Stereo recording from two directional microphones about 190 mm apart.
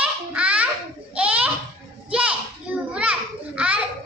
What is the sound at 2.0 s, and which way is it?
Children playing, 5° right (ahead or behind).